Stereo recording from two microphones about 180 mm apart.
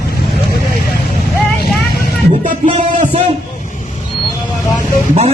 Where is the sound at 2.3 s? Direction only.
40° right (ahead or behind).